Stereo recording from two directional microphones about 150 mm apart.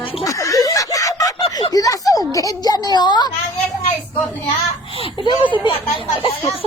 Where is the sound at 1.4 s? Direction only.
35° left (ahead or behind).